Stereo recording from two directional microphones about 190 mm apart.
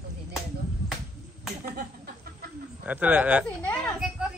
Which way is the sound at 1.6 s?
50° right (ahead or behind).